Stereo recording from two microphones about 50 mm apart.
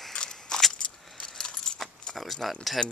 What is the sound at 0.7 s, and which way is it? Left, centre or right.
Keys jangling, centre.